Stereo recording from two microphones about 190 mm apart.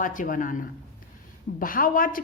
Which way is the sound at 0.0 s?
45° left (ahead or behind).